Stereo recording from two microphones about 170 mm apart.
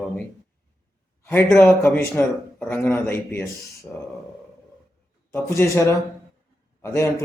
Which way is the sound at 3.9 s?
15° right (ahead or behind).